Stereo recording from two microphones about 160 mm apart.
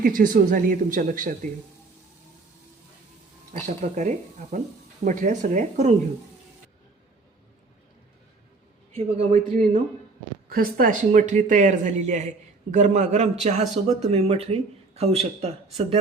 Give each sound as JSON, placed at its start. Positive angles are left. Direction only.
{"t": 0.0, "sound": "speech", "side_deg": -55}
{"t": 3.7, "sound": "a man's voice", "side_deg": -50}
{"t": 9.0, "sound": "a man's voice", "side_deg": -45}
{"t": 10.5, "sound": "a man's voice", "side_deg": -60}